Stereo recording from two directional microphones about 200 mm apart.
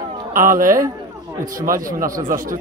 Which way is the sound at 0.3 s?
45° right (ahead or behind).